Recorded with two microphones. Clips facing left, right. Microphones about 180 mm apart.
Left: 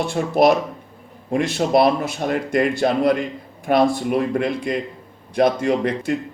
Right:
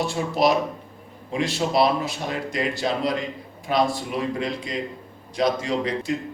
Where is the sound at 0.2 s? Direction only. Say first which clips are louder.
Left 6 dB; 55° left (ahead or behind).